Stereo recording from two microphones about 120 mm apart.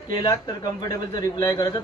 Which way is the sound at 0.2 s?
35° left (ahead or behind).